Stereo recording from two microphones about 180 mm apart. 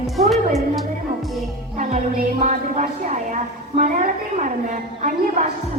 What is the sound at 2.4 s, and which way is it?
A woman's voice, 45° right (ahead or behind).